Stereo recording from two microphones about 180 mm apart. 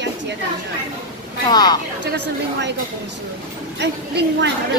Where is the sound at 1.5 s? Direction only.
20° left (ahead or behind).